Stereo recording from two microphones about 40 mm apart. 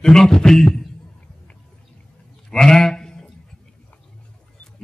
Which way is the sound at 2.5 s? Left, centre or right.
Centre.